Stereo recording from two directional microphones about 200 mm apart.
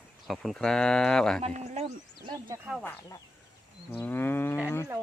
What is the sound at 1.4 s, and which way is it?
Speech, 30° right (ahead or behind).